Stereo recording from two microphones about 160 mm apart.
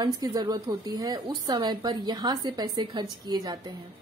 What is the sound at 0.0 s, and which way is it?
A woman's voice, 25° right (ahead or behind).